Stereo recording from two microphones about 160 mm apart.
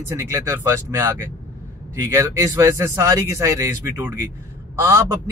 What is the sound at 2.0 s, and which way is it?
A man's voice, 15° right (ahead or behind).